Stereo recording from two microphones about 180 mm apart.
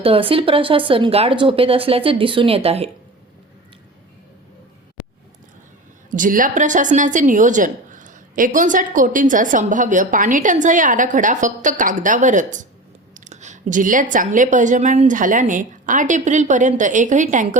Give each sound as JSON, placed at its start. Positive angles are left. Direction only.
{"t": 0.0, "sound": "speech", "side_deg": -30}
{"t": 6.1, "sound": "a woman's voice", "side_deg": -45}